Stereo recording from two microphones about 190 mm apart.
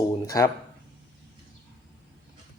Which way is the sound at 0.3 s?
20° left (ahead or behind).